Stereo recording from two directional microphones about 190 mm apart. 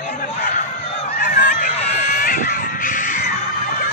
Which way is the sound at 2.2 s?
45° left (ahead or behind).